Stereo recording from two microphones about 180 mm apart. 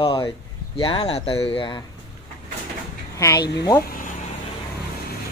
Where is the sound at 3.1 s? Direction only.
15° left (ahead or behind).